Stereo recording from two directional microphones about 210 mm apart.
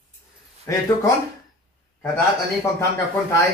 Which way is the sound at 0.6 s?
15° left (ahead or behind).